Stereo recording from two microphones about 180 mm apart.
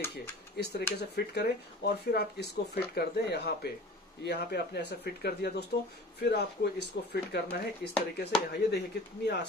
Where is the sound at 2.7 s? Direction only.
60° left (ahead or behind).